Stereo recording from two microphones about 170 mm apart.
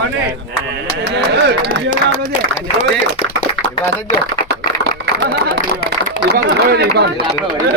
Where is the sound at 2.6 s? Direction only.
35° left (ahead or behind).